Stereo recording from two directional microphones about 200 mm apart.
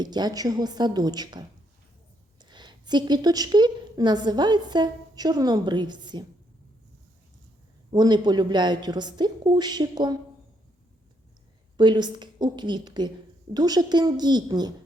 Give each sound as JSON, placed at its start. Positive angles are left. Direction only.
{"t": 0.0, "sound": "a woman's voice", "side_deg": -20}
{"t": 7.9, "sound": "a woman's voice", "side_deg": -20}
{"t": 11.8, "sound": "a woman's voice", "side_deg": -20}